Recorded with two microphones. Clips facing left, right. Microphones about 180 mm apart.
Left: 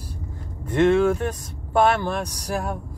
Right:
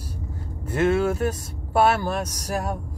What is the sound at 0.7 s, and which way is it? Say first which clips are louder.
Speech: left 3 dB; 5° right (ahead or behind).